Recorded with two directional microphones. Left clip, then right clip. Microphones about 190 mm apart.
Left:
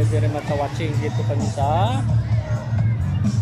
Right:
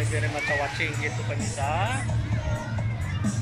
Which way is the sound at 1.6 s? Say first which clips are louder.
Left 6 dB; 20° left (ahead or behind).